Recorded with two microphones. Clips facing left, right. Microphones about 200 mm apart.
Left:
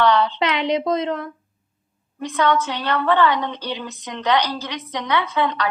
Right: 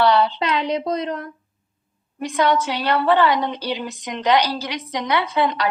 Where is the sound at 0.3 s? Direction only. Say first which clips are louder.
Left 1 dB; 90° left.